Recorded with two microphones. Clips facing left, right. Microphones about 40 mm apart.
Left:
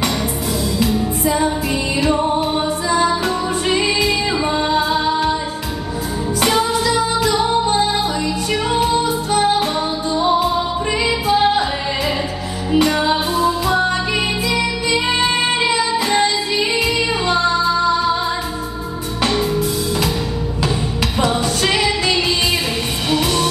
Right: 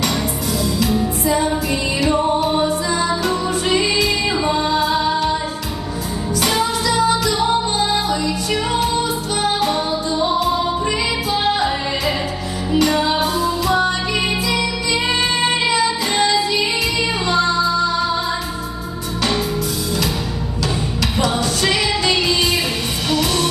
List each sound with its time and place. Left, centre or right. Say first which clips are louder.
1.2 s music: left 2 dB; left
4.0 s music: even; centre
6.4 s music: left 3 dB; left
8.7 s music: left 2 dB; left
12.7 s music: left 1 dB; left
13.7 s music: even; centre
21.3 s music: left 1 dB; centre